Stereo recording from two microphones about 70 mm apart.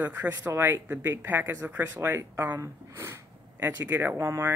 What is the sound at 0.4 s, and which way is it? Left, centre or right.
Speech, right.